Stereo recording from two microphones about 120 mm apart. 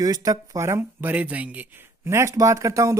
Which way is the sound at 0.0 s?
30° right (ahead or behind).